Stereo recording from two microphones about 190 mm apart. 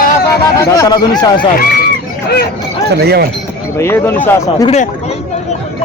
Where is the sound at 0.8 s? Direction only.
20° left (ahead or behind).